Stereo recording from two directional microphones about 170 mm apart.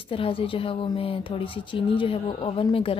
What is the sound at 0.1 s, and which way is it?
Speech, 30° left (ahead or behind).